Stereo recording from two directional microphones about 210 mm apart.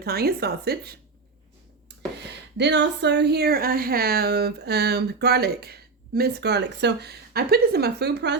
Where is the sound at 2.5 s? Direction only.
55° right (ahead or behind).